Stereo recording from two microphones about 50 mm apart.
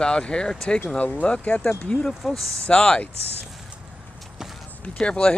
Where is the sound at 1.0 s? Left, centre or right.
Left.